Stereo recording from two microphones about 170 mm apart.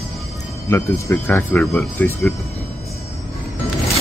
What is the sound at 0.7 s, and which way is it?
Speech, 15° left (ahead or behind).